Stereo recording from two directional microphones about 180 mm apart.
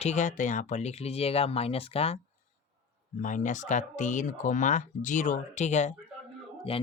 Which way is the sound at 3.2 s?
45° left (ahead or behind).